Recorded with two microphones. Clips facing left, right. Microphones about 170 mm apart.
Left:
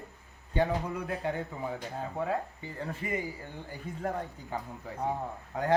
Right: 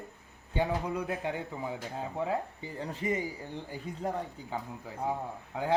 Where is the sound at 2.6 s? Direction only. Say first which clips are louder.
Right 2 dB; 15° right (ahead or behind).